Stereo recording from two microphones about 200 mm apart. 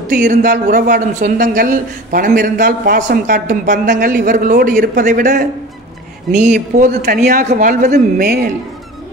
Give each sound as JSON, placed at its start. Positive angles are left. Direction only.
{"t": 0.1, "sound": "speech", "side_deg": -40}
{"t": 6.9, "sound": "speech", "side_deg": -50}